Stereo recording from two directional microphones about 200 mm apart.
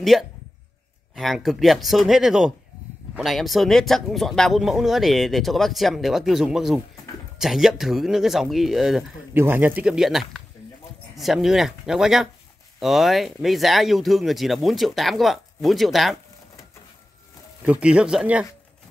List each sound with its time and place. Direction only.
0.0 s speech: centre (ahead or behind)
17.6 s speech: 5° right (ahead or behind)